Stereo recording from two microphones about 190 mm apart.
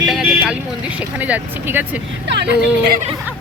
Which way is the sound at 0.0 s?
Centre (ahead or behind).